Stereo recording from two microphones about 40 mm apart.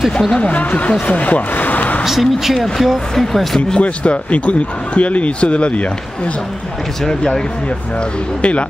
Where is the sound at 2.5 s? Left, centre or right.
Centre.